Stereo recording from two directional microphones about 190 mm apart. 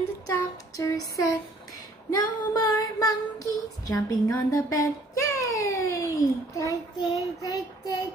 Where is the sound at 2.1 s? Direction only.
20° left (ahead or behind).